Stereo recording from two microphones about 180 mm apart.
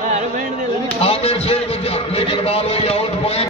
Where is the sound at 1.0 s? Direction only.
35° left (ahead or behind).